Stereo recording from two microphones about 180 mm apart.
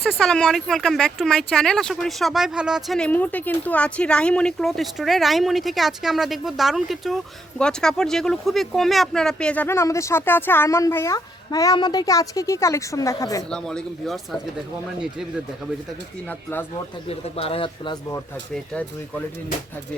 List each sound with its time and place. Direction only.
0.0 s speech: centre (ahead or behind); by 13.4 s 20° left (ahead or behind)
13.5 s speech: 5° left (ahead or behind)
17.1 s a man's voice: 35° left (ahead or behind)
18.5 s speech: 5° left (ahead or behind)